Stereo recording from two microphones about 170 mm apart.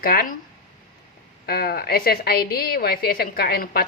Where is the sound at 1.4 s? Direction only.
65° left (ahead or behind).